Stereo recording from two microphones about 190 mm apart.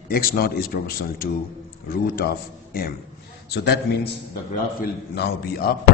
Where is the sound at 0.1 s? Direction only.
50° left (ahead or behind).